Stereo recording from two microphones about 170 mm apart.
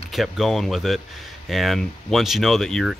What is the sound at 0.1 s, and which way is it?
Speech, centre (ahead or behind).